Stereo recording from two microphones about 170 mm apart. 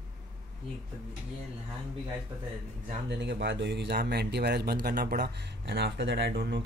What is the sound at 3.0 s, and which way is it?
Speech, 85° right.